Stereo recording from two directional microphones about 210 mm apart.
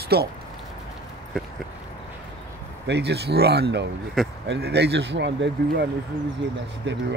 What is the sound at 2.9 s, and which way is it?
Speech, 55° right (ahead or behind).